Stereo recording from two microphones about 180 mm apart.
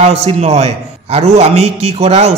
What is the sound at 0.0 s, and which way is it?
A man's voice, 35° right (ahead or behind).